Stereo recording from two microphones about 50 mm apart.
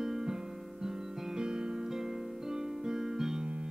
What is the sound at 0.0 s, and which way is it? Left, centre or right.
Music, centre.